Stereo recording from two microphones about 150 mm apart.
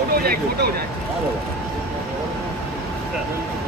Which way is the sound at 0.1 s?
90° right.